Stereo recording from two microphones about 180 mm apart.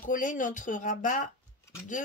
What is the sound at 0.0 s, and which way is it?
Speech, 45° left (ahead or behind).